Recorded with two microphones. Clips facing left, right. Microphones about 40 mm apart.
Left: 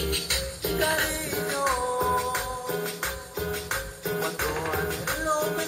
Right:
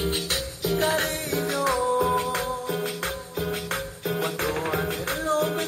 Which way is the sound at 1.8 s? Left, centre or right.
Right.